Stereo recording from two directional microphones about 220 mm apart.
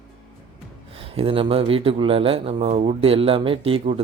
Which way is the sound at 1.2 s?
25° right (ahead or behind).